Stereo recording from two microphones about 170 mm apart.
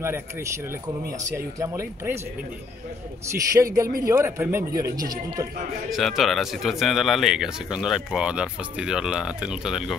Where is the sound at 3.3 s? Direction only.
20° right (ahead or behind).